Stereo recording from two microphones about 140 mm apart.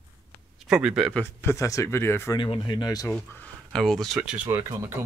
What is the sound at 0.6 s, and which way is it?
Speech, 5° right (ahead or behind).